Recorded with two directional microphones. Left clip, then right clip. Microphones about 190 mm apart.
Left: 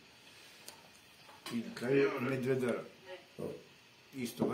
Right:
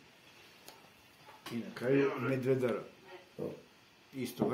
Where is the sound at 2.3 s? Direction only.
55° right (ahead or behind).